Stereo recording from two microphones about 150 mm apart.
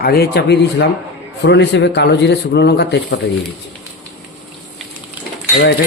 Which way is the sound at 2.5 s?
90° left.